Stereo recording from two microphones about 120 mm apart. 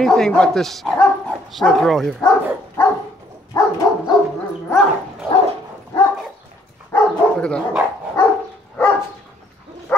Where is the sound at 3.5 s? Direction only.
30° left (ahead or behind).